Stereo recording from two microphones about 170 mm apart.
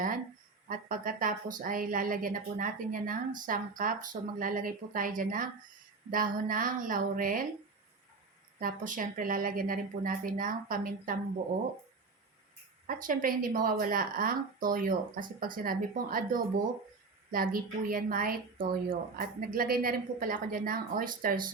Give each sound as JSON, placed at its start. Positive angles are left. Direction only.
{"t": 0.7, "sound": "a woman's voice", "side_deg": -55}
{"t": 8.5, "sound": "speech", "side_deg": -55}
{"t": 12.9, "sound": "speech", "side_deg": -55}